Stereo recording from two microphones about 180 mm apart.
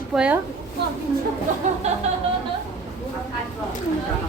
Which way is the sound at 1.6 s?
40° right (ahead or behind).